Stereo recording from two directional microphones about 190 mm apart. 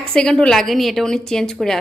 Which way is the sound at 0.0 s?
5° left (ahead or behind).